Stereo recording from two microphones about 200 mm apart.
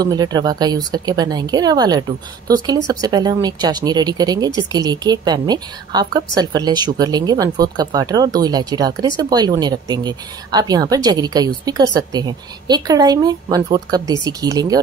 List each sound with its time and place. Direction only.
0.0 s speech: 20° right (ahead or behind)